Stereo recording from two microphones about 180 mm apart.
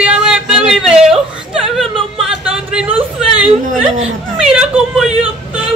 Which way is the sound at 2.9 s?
35° right (ahead or behind).